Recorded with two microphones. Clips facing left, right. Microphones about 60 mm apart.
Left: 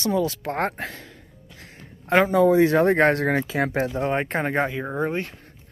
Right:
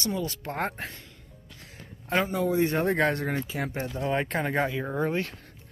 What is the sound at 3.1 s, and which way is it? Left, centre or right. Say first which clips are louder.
Speech: left 8 dB; left.